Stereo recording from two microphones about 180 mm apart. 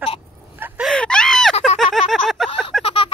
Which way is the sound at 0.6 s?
10° right (ahead or behind).